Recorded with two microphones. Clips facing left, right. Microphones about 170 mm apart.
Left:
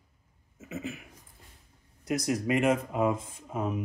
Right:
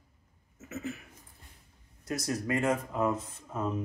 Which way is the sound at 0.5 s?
15° left (ahead or behind).